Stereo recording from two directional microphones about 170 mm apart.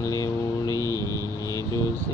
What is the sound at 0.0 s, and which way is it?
Vehicle, 20° left (ahead or behind).